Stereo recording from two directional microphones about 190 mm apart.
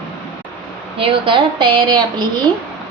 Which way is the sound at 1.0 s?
25° right (ahead or behind).